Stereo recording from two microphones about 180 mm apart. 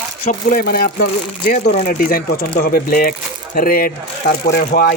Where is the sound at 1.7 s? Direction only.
50° left (ahead or behind).